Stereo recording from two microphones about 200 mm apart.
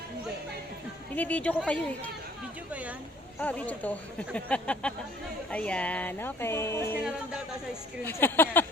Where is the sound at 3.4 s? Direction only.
5° left (ahead or behind).